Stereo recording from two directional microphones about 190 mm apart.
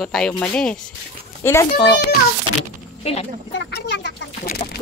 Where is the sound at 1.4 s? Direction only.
15° left (ahead or behind).